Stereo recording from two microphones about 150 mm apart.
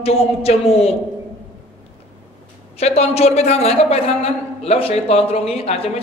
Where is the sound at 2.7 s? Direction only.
45° left (ahead or behind).